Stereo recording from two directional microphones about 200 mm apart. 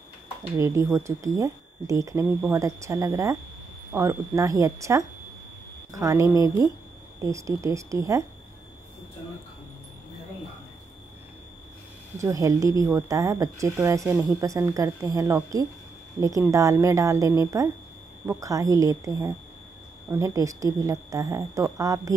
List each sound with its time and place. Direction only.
0.6 s a woman's voice: 15° right (ahead or behind)
12.2 s a woman's voice: 15° right (ahead or behind)